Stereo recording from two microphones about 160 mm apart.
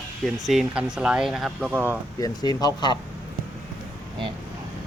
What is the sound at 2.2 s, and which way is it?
Speech, 25° left (ahead or behind).